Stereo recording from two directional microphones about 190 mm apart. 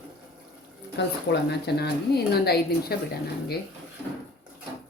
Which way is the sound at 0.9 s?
60° left (ahead or behind).